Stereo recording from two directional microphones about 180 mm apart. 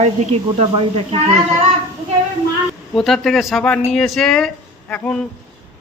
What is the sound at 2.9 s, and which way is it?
Speech, centre (ahead or behind).